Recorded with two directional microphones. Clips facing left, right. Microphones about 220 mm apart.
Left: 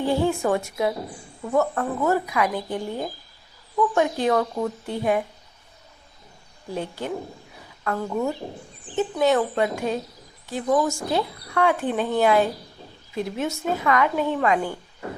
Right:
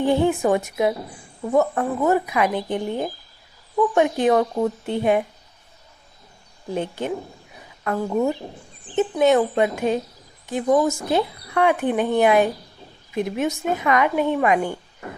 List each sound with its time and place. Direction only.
0.0 s speech: 20° right (ahead or behind)
6.7 s a woman's voice: 20° right (ahead or behind)